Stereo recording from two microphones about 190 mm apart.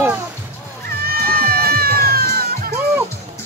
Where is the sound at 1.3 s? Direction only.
55° right (ahead or behind).